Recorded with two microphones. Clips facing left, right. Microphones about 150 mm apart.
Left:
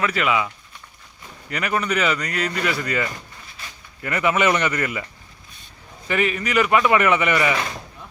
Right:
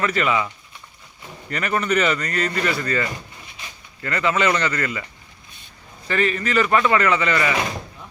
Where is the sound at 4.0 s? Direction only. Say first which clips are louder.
Left 1 dB; 15° left (ahead or behind).